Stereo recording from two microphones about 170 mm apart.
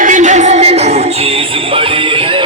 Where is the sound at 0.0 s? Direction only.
45° right (ahead or behind).